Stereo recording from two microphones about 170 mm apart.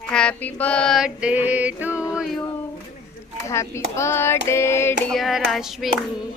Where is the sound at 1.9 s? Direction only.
15° left (ahead or behind).